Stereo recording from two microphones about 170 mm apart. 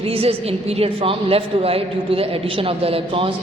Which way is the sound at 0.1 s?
35° right (ahead or behind).